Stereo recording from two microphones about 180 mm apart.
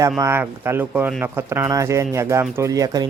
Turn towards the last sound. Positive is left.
turn(degrees=-20)  # may be behind; listen again after turning